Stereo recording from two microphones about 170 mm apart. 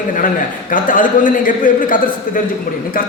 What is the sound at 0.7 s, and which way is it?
A man's voice, 50° left (ahead or behind).